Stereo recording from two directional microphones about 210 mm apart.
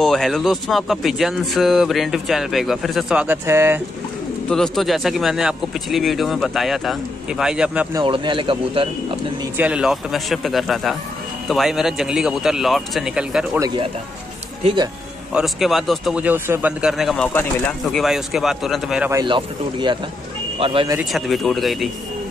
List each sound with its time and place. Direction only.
0.0 s speech: centre (ahead or behind)
4.5 s speech: centre (ahead or behind)
7.9 s a man's voice: 20° right (ahead or behind)
9.6 s speech: 5° right (ahead or behind)
15.3 s speech: centre (ahead or behind)
19.1 s a man's voice: 20° right (ahead or behind)
21.0 s speech: centre (ahead or behind)